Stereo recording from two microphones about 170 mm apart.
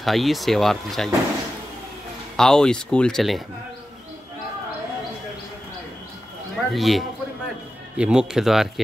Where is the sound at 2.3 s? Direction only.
5° left (ahead or behind).